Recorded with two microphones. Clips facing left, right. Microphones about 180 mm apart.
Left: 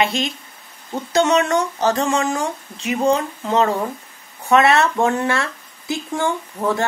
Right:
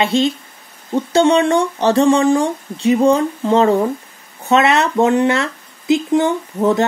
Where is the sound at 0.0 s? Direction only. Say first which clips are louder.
Right 5 dB; 30° right (ahead or behind).